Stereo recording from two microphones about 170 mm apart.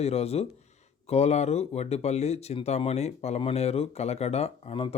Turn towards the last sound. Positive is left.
turn(degrees=35)  # may be behind; listen again after turning